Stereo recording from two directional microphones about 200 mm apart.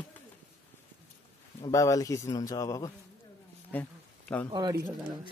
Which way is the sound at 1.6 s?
15° left (ahead or behind).